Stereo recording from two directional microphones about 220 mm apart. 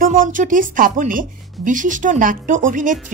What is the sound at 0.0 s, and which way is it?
A woman's voice, 40° right (ahead or behind).